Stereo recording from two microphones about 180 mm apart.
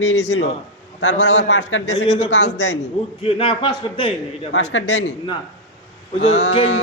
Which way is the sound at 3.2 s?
30° left (ahead or behind).